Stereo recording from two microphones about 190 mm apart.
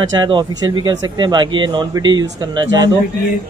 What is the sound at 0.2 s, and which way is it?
Speech, 25° right (ahead or behind).